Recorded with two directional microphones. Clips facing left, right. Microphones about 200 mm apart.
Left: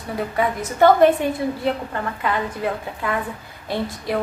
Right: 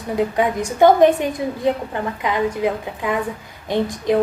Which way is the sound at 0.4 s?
15° right (ahead or behind).